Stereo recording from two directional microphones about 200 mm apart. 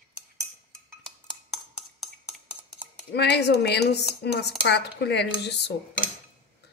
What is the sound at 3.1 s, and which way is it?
Speech, 55° left (ahead or behind).